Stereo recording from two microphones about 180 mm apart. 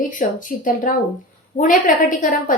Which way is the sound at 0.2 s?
50° left (ahead or behind).